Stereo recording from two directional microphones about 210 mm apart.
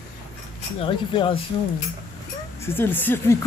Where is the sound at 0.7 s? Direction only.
25° left (ahead or behind).